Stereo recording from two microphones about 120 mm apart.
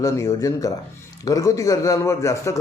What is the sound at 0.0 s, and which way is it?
A man's voice, 25° left (ahead or behind).